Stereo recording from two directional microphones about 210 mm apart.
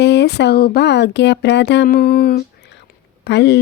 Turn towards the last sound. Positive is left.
turn(degrees=55)  # may be behind; listen again after turning